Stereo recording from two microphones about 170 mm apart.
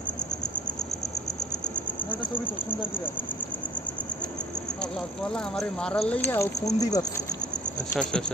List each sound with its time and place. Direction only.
2.0 s speech: 10° left (ahead or behind)
5.2 s speech: 5° left (ahead or behind); by 7.1 s 20° left (ahead or behind)